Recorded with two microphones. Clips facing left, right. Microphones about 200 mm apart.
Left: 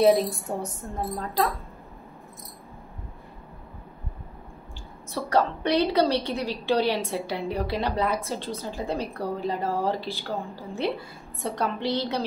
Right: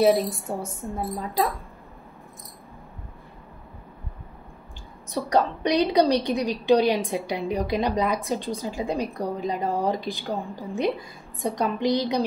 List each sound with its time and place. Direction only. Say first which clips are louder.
0.0 s a woman's voice: even; 5° right (ahead or behind)
5.1 s a woman's voice: right 1 dB; 15° right (ahead or behind)